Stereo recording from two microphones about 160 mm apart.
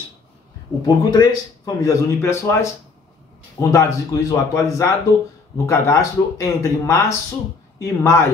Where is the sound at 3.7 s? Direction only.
20° left (ahead or behind).